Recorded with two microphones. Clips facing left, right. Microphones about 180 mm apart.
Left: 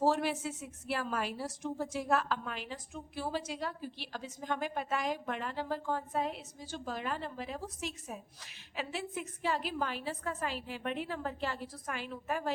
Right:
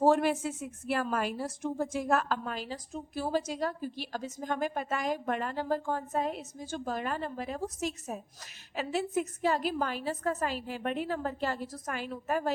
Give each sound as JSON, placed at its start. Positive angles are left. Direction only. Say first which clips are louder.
{"t": 0.0, "sound": "a woman's voice", "louder": "right 5 dB", "side_deg": -50}